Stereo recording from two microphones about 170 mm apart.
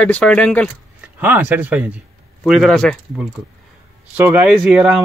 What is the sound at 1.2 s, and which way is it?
Speech, 10° right (ahead or behind).